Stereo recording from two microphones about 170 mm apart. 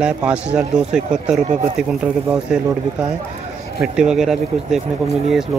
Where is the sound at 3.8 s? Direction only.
5° right (ahead or behind).